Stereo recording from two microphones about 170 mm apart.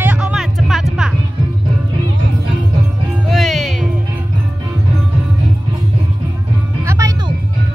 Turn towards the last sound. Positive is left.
turn(degrees=-15)  # may be behind; listen again after turning